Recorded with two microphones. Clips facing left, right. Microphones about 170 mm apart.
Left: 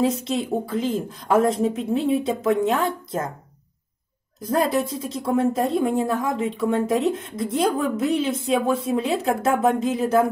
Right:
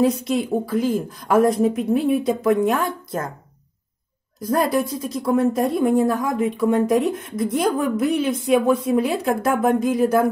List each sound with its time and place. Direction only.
0.0 s a woman's voice: 25° left (ahead or behind)
4.6 s a woman's voice: 25° left (ahead or behind)